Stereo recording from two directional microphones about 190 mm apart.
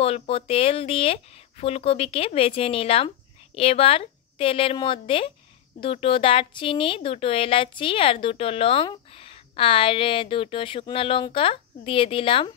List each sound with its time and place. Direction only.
0.0 s speech: 30° left (ahead or behind)